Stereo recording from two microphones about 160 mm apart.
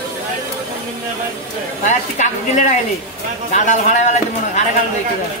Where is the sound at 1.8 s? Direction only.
50° left (ahead or behind).